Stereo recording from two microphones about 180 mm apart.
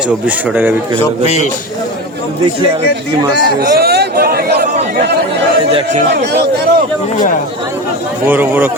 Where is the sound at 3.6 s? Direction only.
60° right (ahead or behind).